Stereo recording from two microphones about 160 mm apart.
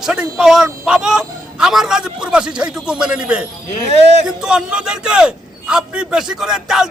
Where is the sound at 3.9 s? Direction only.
45° right (ahead or behind).